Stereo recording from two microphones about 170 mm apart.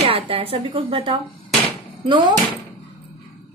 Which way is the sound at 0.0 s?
35° right (ahead or behind).